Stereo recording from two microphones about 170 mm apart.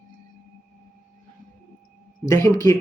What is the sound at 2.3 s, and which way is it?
Speech, 15° left (ahead or behind).